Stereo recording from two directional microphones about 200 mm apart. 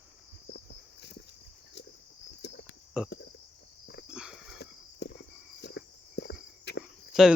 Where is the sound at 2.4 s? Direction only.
60° left (ahead or behind).